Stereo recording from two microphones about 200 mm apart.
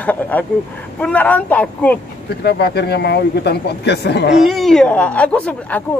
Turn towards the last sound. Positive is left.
turn(degrees=5)  # may be behind; listen again after turning